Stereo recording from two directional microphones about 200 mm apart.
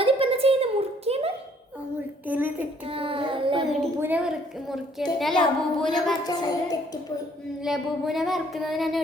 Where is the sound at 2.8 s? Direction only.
25° right (ahead or behind).